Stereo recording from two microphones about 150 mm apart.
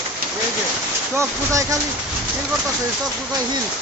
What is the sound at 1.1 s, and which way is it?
Speech, 20° right (ahead or behind).